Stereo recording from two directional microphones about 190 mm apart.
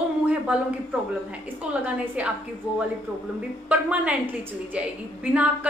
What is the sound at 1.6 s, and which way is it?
Speech, 5° right (ahead or behind).